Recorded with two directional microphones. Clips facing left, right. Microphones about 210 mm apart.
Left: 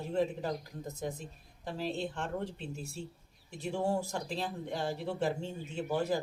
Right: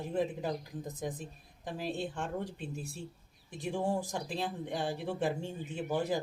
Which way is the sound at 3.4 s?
15° right (ahead or behind).